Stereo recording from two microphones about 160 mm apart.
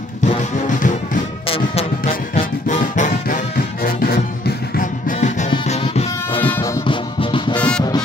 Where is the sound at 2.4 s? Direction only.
55° left (ahead or behind).